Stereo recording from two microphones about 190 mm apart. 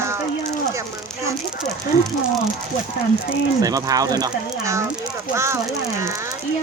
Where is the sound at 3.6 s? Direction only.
20° right (ahead or behind).